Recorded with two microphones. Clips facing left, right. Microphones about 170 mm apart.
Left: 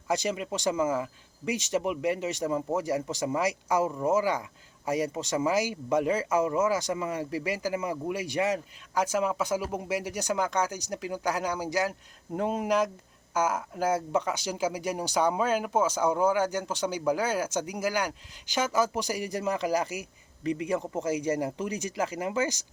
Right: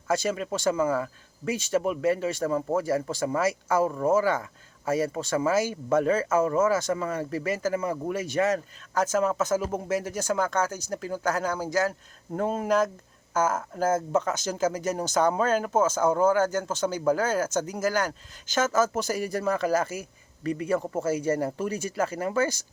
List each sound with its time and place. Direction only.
0.1 s speech: 15° left (ahead or behind)